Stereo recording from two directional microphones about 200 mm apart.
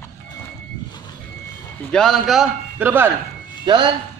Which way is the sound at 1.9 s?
Centre (ahead or behind).